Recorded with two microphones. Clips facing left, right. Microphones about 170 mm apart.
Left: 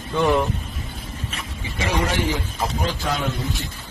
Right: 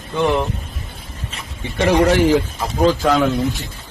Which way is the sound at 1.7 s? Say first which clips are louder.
Right 9 dB; 60° right (ahead or behind).